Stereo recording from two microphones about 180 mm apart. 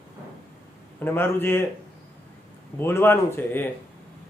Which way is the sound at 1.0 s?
15° left (ahead or behind).